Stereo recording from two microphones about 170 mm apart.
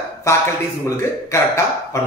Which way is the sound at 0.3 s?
20° left (ahead or behind).